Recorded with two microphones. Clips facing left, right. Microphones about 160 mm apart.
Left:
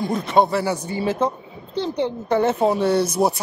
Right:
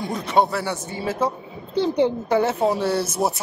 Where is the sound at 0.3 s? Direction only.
5° right (ahead or behind).